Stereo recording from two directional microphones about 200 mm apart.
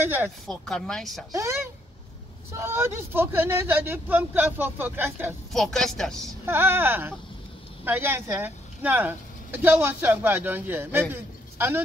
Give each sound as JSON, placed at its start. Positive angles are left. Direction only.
{"t": 0.0, "sound": "speech", "side_deg": -10}
{"t": 0.5, "sound": "speech", "side_deg": 0}
{"t": 1.3, "sound": "speech", "side_deg": -15}
{"t": 5.5, "sound": "speech", "side_deg": 0}
{"t": 6.4, "sound": "speech", "side_deg": -10}